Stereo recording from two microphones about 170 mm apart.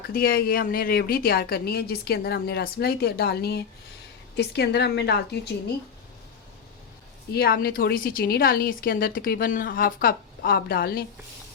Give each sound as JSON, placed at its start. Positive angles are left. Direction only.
{"t": 0.1, "sound": "a woman's voice", "side_deg": 60}
{"t": 7.3, "sound": "a woman's voice", "side_deg": 65}